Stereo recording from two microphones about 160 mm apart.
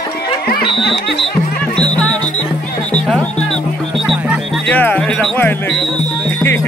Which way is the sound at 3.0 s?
5° left (ahead or behind).